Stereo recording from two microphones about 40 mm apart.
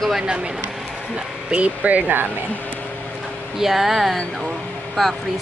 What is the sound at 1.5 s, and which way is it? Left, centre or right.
Speech, right.